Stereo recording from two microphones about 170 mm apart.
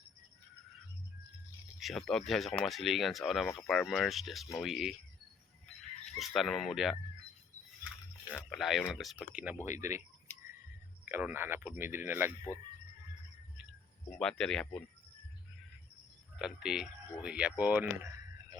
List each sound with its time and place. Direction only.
1.8 s speech: centre (ahead or behind)
6.1 s speech: centre (ahead or behind)
8.3 s speech: 5° left (ahead or behind); by 10.0 s 15° right (ahead or behind)
11.0 s speech: 10° right (ahead or behind)
14.2 s speech: 5° left (ahead or behind)
16.4 s speech: 5° right (ahead or behind)